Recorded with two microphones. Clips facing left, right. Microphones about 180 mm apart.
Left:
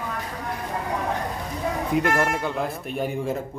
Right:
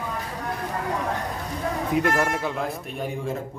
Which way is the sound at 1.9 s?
Centre (ahead or behind).